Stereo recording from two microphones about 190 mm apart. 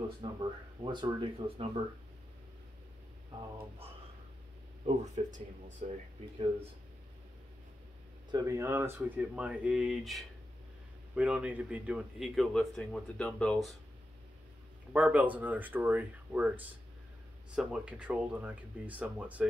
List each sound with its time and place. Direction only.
0.2 s speech: 25° right (ahead or behind)
4.8 s speech: 35° right (ahead or behind)
8.3 s speech: 20° right (ahead or behind); by 13.7 s 5° left (ahead or behind)
14.9 s speech: 10° right (ahead or behind)